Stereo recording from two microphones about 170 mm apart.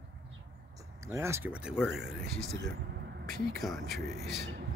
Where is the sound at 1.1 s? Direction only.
15° right (ahead or behind).